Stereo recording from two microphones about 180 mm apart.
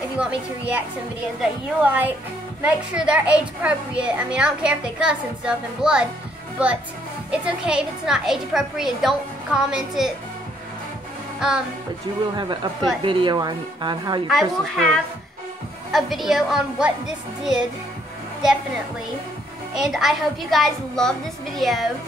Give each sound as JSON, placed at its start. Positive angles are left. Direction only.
{"t": 0.2, "sound": "a woman's voice", "side_deg": -5}
{"t": 7.2, "sound": "a child's voice", "side_deg": -5}
{"t": 12.4, "sound": "a woman's voice", "side_deg": -25}
{"t": 14.3, "sound": "a child's voice", "side_deg": 0}
{"t": 15.9, "sound": "a child's voice", "side_deg": 0}
{"t": 19.8, "sound": "a child's voice", "side_deg": 0}